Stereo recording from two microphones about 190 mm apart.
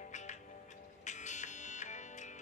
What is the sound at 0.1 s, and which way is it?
Music, 40° left (ahead or behind).